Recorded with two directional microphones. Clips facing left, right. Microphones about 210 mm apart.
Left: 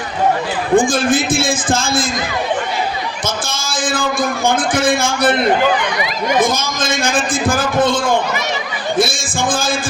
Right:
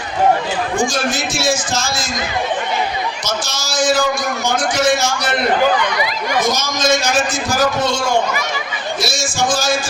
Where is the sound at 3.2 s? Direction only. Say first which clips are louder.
Left 1 dB; 55° left (ahead or behind).